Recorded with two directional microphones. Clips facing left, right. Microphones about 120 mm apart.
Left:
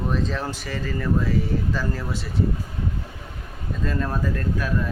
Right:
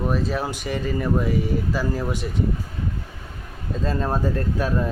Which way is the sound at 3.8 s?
30° right (ahead or behind).